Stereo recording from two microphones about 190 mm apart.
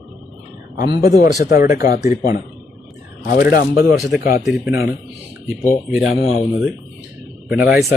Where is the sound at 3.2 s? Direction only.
50° left (ahead or behind).